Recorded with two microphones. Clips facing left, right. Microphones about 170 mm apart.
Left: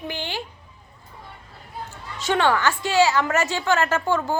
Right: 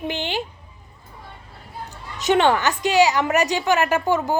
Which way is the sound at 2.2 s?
20° right (ahead or behind).